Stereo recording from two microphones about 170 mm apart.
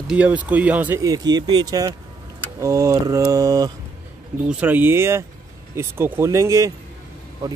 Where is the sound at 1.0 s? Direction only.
20° right (ahead or behind).